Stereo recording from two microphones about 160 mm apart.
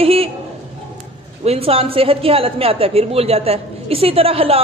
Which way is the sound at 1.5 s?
35° right (ahead or behind).